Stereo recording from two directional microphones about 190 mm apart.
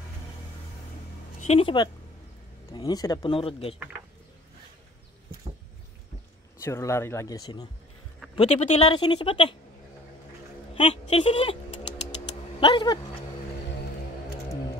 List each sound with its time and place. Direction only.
1.4 s speech: 30° left (ahead or behind)
6.6 s speech: 15° left (ahead or behind)
8.4 s speech: 35° left (ahead or behind)
10.7 s speech: 30° left (ahead or behind)
12.5 s a sound: 25° left (ahead or behind)